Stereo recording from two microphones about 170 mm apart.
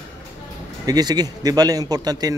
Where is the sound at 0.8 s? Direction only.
25° right (ahead or behind).